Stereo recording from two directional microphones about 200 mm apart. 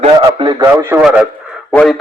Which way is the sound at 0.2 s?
20° right (ahead or behind).